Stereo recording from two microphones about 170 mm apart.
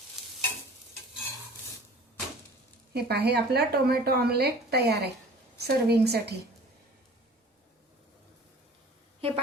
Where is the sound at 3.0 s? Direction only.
70° right (ahead or behind).